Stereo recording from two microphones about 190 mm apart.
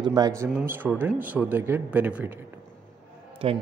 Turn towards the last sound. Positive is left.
turn(degrees=-30)  # may be behind; listen again after turning